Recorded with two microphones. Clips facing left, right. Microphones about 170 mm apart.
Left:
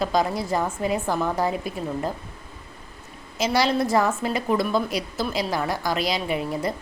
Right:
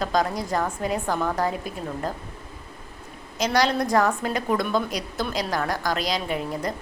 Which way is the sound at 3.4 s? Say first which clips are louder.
Left 1 dB; 5° left (ahead or behind).